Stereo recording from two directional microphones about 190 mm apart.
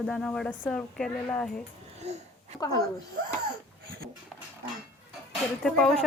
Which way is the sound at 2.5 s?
20° left (ahead or behind).